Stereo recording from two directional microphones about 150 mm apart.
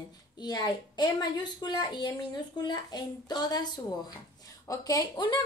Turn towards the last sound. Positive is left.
turn(degrees=30)  # may be behind; listen again after turning